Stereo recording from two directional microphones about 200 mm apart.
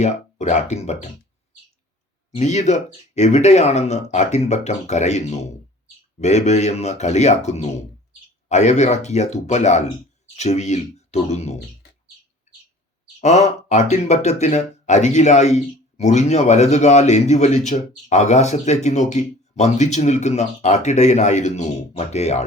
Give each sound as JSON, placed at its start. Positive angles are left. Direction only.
{"t": 0.0, "sound": "speech", "side_deg": 35}
{"t": 2.3, "sound": "speech", "side_deg": 35}
{"t": 13.2, "sound": "speech", "side_deg": 35}